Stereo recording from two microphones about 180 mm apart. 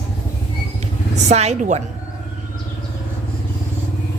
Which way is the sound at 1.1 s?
40° right (ahead or behind).